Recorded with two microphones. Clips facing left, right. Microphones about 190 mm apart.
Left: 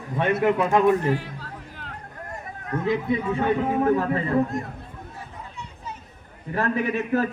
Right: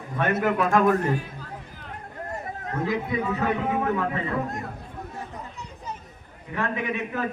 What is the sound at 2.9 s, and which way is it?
A man's voice, 30° left (ahead or behind).